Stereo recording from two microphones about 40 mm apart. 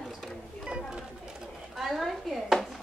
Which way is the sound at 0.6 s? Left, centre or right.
Right.